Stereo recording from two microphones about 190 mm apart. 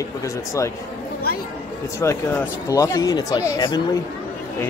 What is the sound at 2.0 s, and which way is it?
Speech, 15° left (ahead or behind).